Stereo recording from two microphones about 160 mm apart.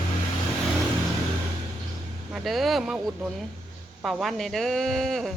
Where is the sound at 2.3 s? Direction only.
Centre (ahead or behind).